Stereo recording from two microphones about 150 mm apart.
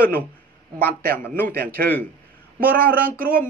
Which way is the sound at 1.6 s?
90° right.